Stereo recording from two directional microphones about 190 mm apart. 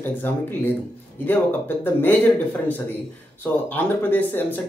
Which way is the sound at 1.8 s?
10° left (ahead or behind).